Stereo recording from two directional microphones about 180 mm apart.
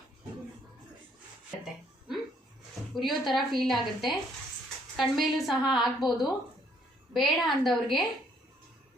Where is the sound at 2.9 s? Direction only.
Centre (ahead or behind).